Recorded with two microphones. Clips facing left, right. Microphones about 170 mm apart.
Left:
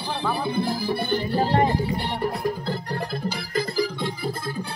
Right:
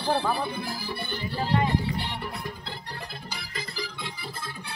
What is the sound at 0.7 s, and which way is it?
Music, 40° left (ahead or behind).